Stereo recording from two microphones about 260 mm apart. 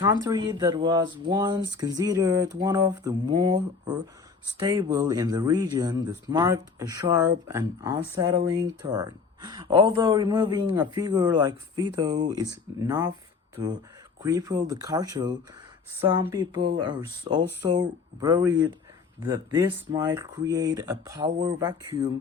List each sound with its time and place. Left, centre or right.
0.0 s a man's voice: centre